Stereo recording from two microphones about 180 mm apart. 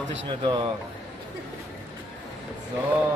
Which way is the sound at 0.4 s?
25° right (ahead or behind).